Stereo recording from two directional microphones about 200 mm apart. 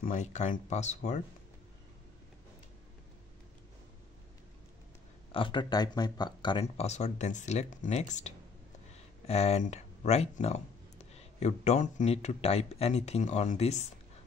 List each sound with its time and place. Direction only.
0.0 s speech: 35° left (ahead or behind)
5.3 s speech: 25° left (ahead or behind)